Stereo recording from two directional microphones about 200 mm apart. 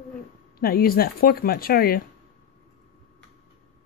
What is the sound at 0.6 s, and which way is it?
Speech, 50° left (ahead or behind).